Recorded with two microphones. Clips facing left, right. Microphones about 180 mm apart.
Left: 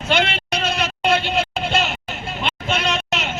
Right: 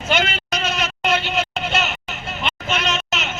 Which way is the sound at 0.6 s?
30° left (ahead or behind).